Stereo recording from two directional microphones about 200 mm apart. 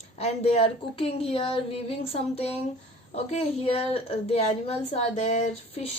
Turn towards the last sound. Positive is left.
turn(degrees=35)  # may be behind; listen again after turning